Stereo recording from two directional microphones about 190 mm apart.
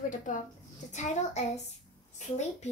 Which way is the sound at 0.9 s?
40° left (ahead or behind).